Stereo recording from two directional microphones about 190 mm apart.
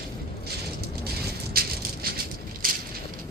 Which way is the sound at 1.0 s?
5° right (ahead or behind).